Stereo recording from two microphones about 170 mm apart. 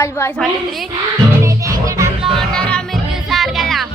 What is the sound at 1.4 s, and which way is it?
Music, 20° right (ahead or behind).